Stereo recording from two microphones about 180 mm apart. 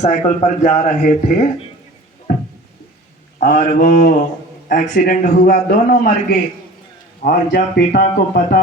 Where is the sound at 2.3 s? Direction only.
55° left (ahead or behind).